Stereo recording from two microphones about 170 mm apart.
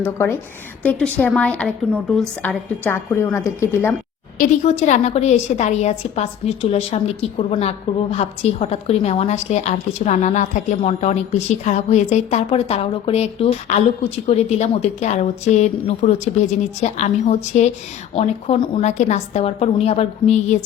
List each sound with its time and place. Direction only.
0.0 s a woman's voice: 15° left (ahead or behind)
4.8 s a woman's voice: 40° left (ahead or behind)